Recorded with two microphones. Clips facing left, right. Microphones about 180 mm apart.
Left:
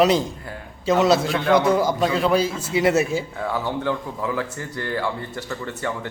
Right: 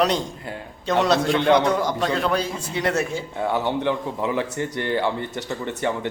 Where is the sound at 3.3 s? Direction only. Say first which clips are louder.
Right 2 dB; 25° right (ahead or behind).